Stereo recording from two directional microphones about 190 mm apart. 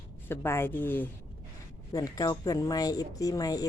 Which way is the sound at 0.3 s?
15° left (ahead or behind).